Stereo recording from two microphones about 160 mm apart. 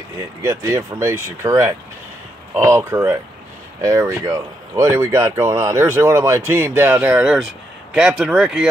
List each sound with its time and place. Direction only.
0.4 s speech: 20° right (ahead or behind); by 8.6 s 5° right (ahead or behind)